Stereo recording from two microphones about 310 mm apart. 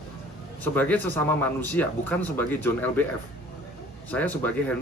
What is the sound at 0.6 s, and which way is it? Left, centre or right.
Speech, centre.